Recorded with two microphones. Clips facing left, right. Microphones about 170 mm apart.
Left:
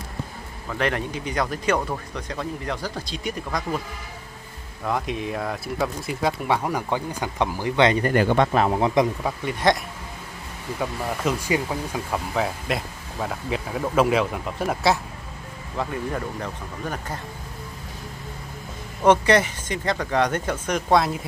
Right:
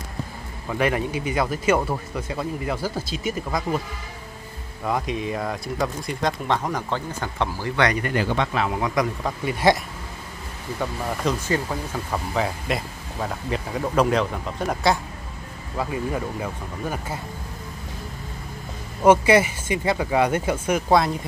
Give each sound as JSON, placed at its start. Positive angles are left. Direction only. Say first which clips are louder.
{"t": 0.7, "sound": "speech", "louder": "right 3 dB", "side_deg": -5}
{"t": 4.8, "sound": "speech", "louder": "right 1 dB", "side_deg": 0}
{"t": 8.0, "sound": "speech", "louder": "left 4 dB", "side_deg": 50}
{"t": 8.7, "sound": "a man's voice", "louder": "left 3 dB", "side_deg": 25}
{"t": 9.5, "sound": "speech", "louder": "right 2 dB", "side_deg": -5}
{"t": 10.8, "sound": "speech", "louder": "even", "side_deg": 10}
{"t": 12.4, "sound": "speech", "louder": "right 1 dB", "side_deg": 0}
{"t": 19.0, "sound": "speech", "louder": "right 2 dB", "side_deg": -5}